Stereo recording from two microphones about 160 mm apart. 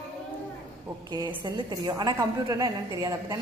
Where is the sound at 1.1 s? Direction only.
25° right (ahead or behind).